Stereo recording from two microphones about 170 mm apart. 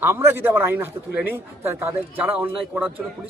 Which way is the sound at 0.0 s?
15° right (ahead or behind).